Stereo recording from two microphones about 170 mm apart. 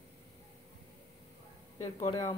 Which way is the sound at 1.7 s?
20° left (ahead or behind).